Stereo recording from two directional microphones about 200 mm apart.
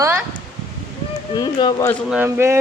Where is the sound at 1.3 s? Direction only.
15° left (ahead or behind).